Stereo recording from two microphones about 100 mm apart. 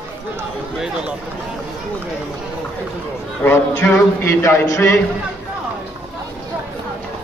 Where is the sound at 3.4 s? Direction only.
25° left (ahead or behind).